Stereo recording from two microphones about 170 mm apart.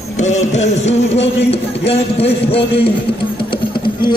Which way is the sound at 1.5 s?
35° left (ahead or behind).